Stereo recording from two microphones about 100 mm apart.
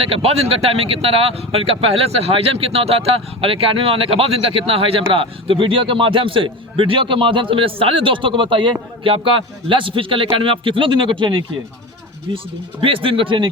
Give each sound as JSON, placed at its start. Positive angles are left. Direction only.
{"t": 0.0, "sound": "speech", "side_deg": -80}
{"t": 12.3, "sound": "speech", "side_deg": -40}
{"t": 12.8, "sound": "speech", "side_deg": -60}